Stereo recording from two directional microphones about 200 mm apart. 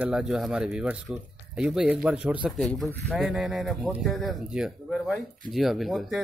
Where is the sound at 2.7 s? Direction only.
5° left (ahead or behind).